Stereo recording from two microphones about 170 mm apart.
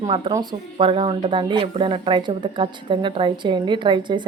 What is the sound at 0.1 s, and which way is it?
A woman's voice, 30° right (ahead or behind).